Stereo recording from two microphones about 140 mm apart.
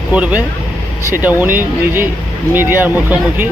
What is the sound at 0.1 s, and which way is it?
Speech, 10° right (ahead or behind).